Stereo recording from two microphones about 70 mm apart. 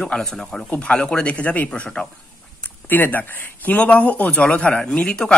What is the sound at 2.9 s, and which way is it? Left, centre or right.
A man's voice, left.